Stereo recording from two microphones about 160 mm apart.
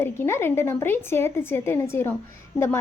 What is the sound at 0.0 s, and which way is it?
A woman's voice, 15° left (ahead or behind).